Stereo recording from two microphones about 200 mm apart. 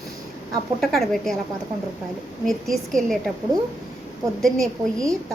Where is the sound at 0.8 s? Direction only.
Centre (ahead or behind).